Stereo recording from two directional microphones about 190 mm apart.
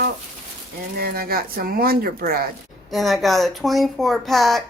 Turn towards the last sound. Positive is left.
turn(degrees=0)  # may be behind; listen again after turning